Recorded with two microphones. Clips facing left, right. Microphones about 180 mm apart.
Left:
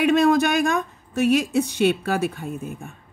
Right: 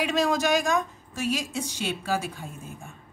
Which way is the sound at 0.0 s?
60° left (ahead or behind).